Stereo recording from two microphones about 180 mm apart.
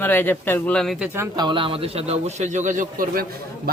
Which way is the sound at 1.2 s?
25° right (ahead or behind).